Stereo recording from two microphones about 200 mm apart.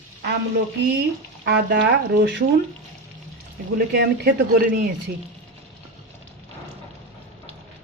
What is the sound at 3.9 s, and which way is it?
Speech, 55° right (ahead or behind).